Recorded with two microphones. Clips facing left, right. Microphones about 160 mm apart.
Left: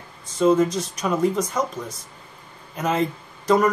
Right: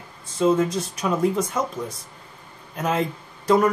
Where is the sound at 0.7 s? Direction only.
5° right (ahead or behind).